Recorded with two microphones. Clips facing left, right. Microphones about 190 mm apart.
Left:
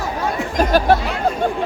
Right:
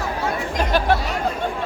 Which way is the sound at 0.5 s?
40° left (ahead or behind).